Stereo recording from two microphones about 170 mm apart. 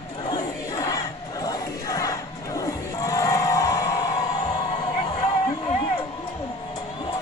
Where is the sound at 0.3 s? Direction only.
20° left (ahead or behind).